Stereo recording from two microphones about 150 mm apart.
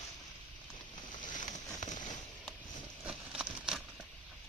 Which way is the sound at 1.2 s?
60° left (ahead or behind).